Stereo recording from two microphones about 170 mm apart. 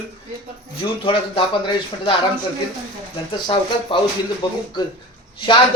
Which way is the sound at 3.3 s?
30° left (ahead or behind).